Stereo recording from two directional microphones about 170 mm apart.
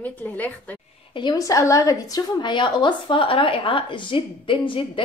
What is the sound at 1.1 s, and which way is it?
A woman's voice, 25° left (ahead or behind).